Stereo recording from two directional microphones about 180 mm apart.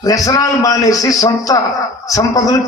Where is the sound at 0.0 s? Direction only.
20° left (ahead or behind).